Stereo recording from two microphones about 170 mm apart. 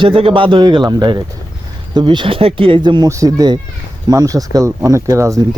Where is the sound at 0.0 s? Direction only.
30° right (ahead or behind).